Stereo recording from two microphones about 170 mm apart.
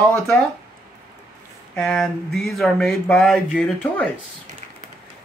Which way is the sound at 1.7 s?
5° left (ahead or behind).